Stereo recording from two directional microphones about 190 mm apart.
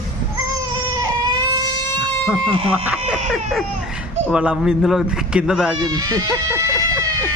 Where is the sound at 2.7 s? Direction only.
10° right (ahead or behind).